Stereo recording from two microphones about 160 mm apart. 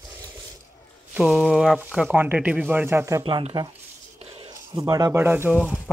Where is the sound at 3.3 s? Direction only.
30° right (ahead or behind).